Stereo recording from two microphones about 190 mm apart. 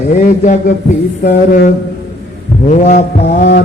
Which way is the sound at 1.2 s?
45° left (ahead or behind).